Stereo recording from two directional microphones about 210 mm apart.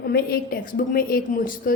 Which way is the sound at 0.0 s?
45° left (ahead or behind).